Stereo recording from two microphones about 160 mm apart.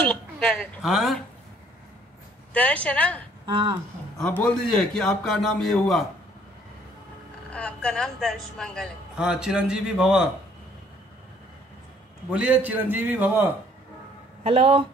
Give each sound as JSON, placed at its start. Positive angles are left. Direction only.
{"t": 0.1, "sound": "a woman's voice", "side_deg": 0}
{"t": 2.5, "sound": "a woman's voice", "side_deg": 10}
{"t": 3.4, "sound": "speech", "side_deg": -30}
{"t": 4.2, "sound": "a man's voice", "side_deg": 10}
{"t": 7.5, "sound": "a man's voice", "side_deg": 5}
{"t": 12.3, "sound": "a man's voice", "side_deg": -10}
{"t": 14.4, "sound": "speech", "side_deg": -40}